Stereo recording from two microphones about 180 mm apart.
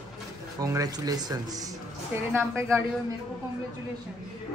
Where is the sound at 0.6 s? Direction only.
20° right (ahead or behind).